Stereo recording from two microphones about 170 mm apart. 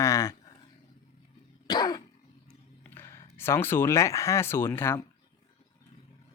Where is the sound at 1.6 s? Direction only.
25° left (ahead or behind).